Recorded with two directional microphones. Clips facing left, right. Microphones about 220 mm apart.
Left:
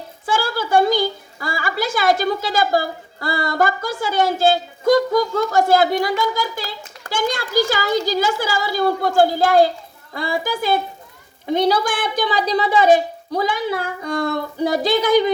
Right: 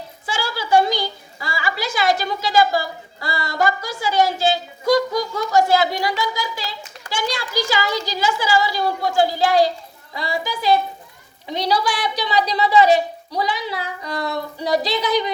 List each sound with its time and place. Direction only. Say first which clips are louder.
0.3 s a woman's voice: left 1 dB; 50° left (ahead or behind)